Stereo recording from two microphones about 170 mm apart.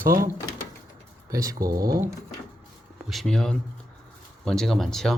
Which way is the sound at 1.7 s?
20° right (ahead or behind).